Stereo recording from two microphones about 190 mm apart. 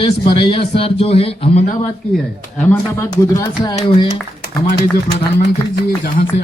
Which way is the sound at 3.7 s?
30° left (ahead or behind).